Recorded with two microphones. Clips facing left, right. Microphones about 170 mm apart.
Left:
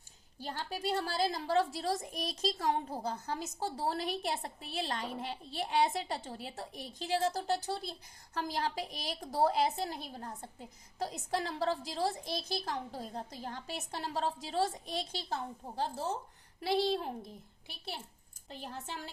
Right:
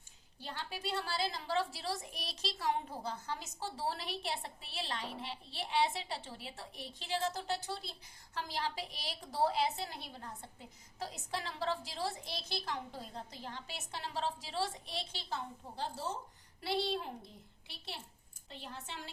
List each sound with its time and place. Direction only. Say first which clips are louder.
0.3 s a woman's voice: left 4 dB; 40° left (ahead or behind)
18.6 s a woman's voice: left 4 dB; 45° left (ahead or behind)